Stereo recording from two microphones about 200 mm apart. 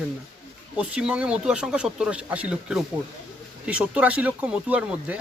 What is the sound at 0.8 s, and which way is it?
Speech, 5° right (ahead or behind).